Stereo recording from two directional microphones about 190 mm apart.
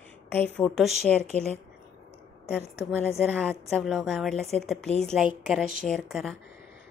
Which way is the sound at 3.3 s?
5° left (ahead or behind).